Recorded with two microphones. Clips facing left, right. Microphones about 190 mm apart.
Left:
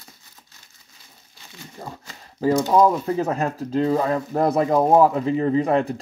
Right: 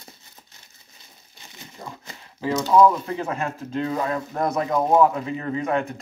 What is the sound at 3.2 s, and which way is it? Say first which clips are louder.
Speech: left 5 dB; 40° left (ahead or behind).